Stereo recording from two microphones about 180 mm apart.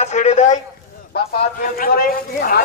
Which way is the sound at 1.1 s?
55° left (ahead or behind).